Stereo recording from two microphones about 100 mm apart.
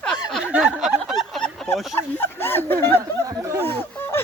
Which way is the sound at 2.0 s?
20° left (ahead or behind).